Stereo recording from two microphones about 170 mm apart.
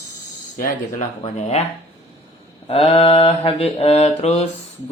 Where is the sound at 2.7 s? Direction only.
35° left (ahead or behind).